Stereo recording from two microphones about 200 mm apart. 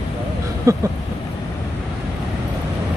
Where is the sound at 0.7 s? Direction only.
15° right (ahead or behind).